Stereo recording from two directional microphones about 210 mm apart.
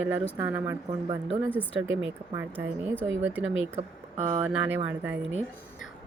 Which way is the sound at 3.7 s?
30° right (ahead or behind).